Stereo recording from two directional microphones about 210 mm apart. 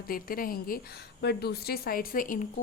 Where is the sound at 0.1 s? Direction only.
45° left (ahead or behind).